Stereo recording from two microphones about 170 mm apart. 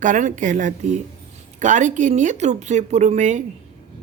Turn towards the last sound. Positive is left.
turn(degrees=-45)  # may be behind; listen again after turning